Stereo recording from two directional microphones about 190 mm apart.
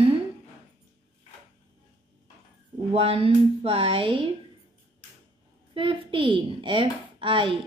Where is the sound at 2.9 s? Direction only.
30° right (ahead or behind).